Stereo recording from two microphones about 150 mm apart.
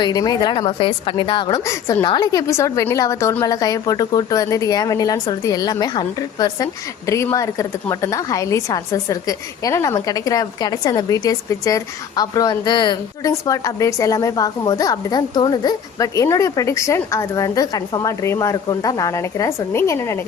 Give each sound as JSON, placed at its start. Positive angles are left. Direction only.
{"t": 0.0, "sound": "a woman's voice", "side_deg": 25}